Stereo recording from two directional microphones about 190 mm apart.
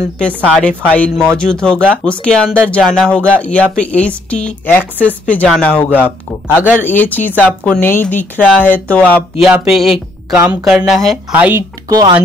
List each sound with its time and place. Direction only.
0.2 s a woman's voice: 5° left (ahead or behind)
11.9 s speech: 20° right (ahead or behind)